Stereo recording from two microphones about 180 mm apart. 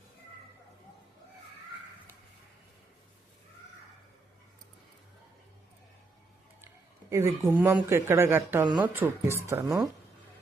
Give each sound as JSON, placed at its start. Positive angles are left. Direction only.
{"t": 7.1, "sound": "speech", "side_deg": -15}